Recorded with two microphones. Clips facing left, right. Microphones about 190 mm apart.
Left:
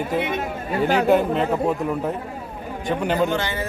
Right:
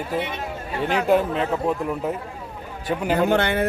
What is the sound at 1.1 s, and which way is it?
Speech, centre (ahead or behind).